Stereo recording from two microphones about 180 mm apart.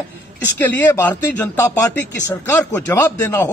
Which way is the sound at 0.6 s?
10° left (ahead or behind).